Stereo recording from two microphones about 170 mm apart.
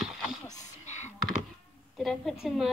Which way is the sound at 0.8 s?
45° left (ahead or behind).